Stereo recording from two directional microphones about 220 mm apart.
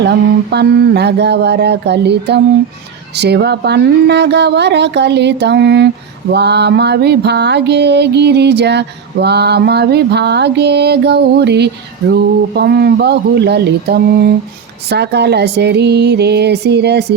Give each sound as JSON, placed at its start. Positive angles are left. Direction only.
{"t": 0.0, "sound": "mantra", "side_deg": -50}